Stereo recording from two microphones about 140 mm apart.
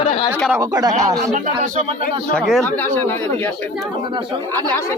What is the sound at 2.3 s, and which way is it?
Speech, 5° left (ahead or behind).